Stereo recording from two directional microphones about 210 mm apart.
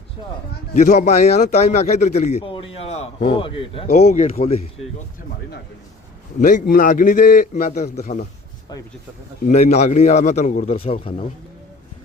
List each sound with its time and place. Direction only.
0.7 s a man's voice: 35° left (ahead or behind)
6.4 s a man's voice: 40° left (ahead or behind)
9.5 s a man's voice: 35° left (ahead or behind)